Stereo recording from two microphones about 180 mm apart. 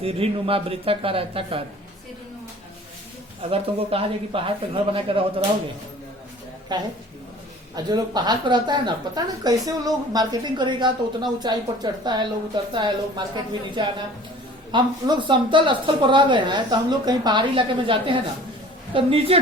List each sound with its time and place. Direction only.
0.0 s speech: 30° right (ahead or behind)
3.5 s speech: 30° right (ahead or behind)
6.7 s speech: 25° right (ahead or behind)
7.9 s speech: 25° right (ahead or behind)